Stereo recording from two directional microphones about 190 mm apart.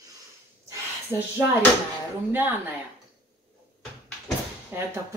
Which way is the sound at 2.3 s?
10° right (ahead or behind).